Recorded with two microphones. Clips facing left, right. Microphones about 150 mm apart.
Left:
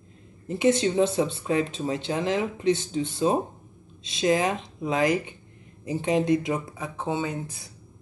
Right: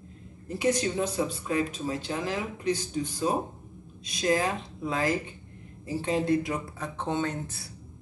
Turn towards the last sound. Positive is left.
turn(degrees=15)  # may be behind; listen again after turning